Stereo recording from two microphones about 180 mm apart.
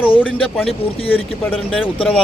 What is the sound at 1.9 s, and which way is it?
Speech, 5° left (ahead or behind).